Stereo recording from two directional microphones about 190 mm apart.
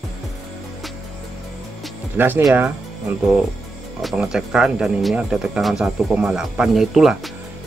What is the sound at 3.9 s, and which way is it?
Speech, centre (ahead or behind).